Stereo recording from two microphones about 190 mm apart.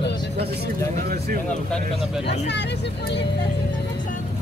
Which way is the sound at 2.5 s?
65° left (ahead or behind).